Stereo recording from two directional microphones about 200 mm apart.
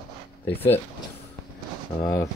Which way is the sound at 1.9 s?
20° left (ahead or behind).